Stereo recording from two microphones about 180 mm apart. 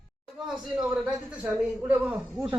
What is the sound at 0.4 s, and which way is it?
A man's voice, 5° right (ahead or behind).